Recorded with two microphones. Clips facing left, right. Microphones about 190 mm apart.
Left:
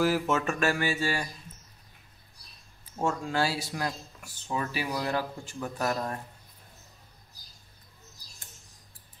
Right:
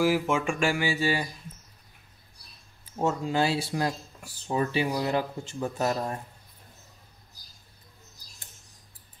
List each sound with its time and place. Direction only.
0.0 s speech: 10° right (ahead or behind)
3.0 s speech: 20° right (ahead or behind)